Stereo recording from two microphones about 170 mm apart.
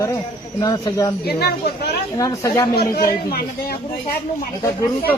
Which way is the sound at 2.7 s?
65° left (ahead or behind).